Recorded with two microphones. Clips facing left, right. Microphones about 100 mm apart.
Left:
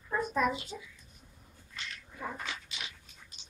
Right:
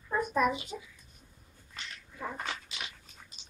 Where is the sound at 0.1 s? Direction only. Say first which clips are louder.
Right 2 dB; 5° right (ahead or behind).